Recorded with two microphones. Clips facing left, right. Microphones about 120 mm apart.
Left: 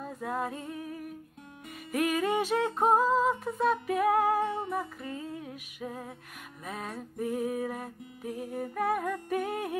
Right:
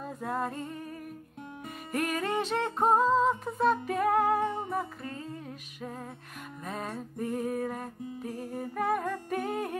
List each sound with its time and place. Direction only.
0.0 s music: centre (ahead or behind)